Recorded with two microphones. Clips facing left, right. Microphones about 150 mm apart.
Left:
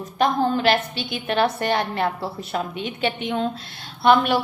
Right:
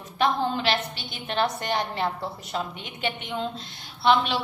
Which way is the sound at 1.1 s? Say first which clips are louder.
Left 5 dB; 60° left (ahead or behind).